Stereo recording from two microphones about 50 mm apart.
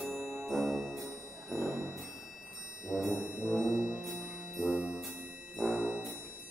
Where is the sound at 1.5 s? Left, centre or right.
Left.